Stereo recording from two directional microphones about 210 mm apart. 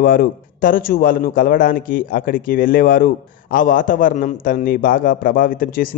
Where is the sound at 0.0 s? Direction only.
45° left (ahead or behind).